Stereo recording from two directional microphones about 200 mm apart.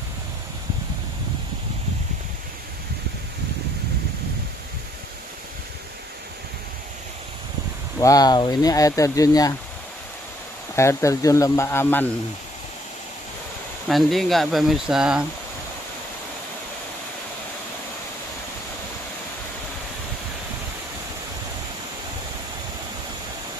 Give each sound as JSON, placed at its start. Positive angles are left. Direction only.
{"t": 8.0, "sound": "speech", "side_deg": 20}
{"t": 10.8, "sound": "speech", "side_deg": 15}
{"t": 13.8, "sound": "speech", "side_deg": 0}